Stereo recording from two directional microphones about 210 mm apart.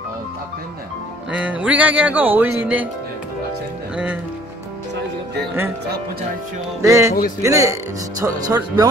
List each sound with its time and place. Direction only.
1.3 s speech: 5° right (ahead or behind)
3.9 s speech: 5° right (ahead or behind)
6.8 s speech: 15° right (ahead or behind)